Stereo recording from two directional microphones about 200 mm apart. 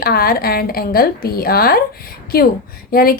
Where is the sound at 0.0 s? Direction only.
50° left (ahead or behind).